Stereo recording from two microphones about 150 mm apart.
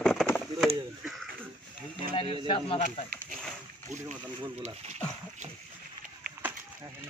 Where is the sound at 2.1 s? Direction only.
35° left (ahead or behind).